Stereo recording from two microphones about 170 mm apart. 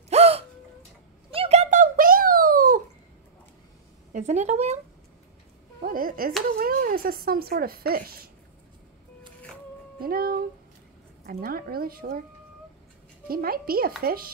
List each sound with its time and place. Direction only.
0.1 s gasp: 35° right (ahead or behind)
1.3 s a sound: 35° right (ahead or behind); by 2.8 s 55° right (ahead or behind)
4.1 s speech: 40° right (ahead or behind)
5.8 s speech: 55° right (ahead or behind)
10.0 s speech: 60° right (ahead or behind)
13.3 s speech: 60° right (ahead or behind)